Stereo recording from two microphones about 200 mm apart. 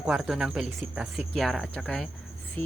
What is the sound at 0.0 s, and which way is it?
Speech, 5° right (ahead or behind).